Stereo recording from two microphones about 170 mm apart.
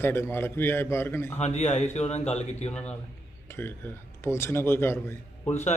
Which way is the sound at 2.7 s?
5° left (ahead or behind).